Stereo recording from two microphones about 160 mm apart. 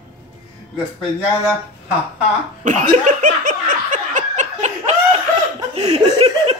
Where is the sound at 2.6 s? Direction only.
50° right (ahead or behind).